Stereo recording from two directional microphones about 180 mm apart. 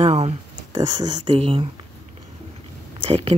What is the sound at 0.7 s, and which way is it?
Speech, 25° right (ahead or behind).